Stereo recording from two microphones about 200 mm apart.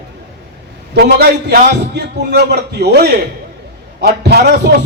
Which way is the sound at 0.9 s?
55° right (ahead or behind).